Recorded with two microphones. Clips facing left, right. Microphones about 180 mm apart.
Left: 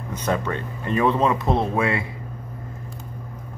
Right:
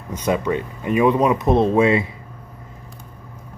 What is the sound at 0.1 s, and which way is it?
Speech, 10° right (ahead or behind).